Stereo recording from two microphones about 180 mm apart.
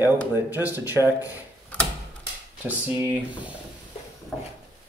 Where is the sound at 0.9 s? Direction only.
15° left (ahead or behind).